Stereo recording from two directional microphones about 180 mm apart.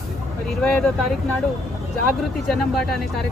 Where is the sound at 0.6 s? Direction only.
5° left (ahead or behind).